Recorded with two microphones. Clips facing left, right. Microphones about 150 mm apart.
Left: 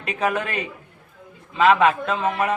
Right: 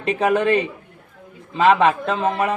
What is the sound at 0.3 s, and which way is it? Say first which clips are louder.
A man's voice: right 8 dB; 30° right (ahead or behind).